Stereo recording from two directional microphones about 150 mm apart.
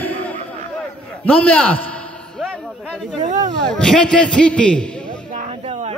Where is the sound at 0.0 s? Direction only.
10° left (ahead or behind).